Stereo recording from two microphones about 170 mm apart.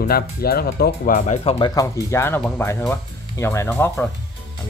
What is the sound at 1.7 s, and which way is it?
Speech, 20° left (ahead or behind).